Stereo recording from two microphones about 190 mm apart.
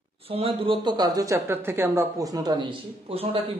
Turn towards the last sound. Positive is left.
turn(degrees=-30)  # may be behind; listen again after turning